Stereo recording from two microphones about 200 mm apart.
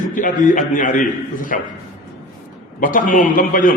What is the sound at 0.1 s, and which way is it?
A man's voice, 40° left (ahead or behind).